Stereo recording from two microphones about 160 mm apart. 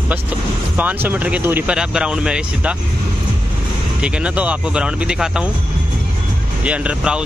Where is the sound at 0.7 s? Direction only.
10° right (ahead or behind).